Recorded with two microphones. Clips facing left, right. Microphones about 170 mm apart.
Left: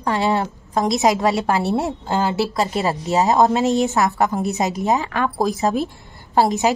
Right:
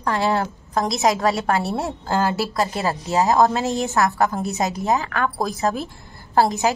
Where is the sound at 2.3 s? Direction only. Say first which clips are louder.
Left 2 dB; 20° left (ahead or behind).